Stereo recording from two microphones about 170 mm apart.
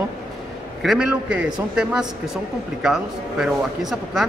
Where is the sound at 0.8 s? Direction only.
5° right (ahead or behind).